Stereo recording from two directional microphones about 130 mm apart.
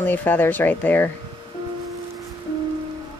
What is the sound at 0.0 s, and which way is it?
Speech, 15° left (ahead or behind).